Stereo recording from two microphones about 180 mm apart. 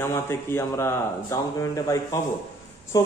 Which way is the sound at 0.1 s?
15° left (ahead or behind).